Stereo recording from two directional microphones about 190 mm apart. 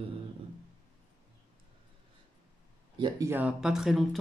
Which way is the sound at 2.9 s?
25° right (ahead or behind).